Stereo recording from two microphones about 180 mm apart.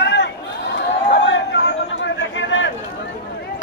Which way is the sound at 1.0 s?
75° left (ahead or behind).